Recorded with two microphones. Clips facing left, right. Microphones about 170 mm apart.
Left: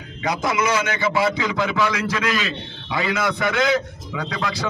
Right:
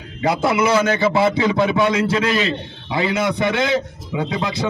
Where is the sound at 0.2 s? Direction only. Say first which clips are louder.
Right 5 dB; 30° right (ahead or behind).